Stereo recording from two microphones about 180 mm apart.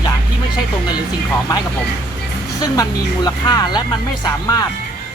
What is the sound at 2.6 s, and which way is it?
Speech, 20° left (ahead or behind).